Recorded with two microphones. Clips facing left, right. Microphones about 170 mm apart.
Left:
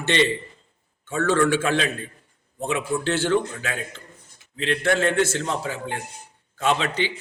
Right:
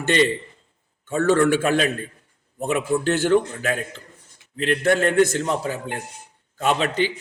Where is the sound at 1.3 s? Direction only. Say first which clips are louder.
Right 2 dB; 40° right (ahead or behind).